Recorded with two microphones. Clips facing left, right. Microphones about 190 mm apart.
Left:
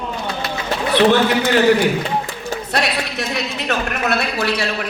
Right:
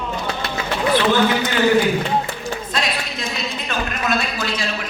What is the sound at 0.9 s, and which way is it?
Speech, 65° left (ahead or behind).